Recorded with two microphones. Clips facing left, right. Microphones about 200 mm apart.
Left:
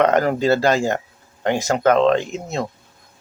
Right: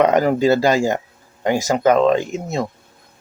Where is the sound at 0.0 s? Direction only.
5° right (ahead or behind).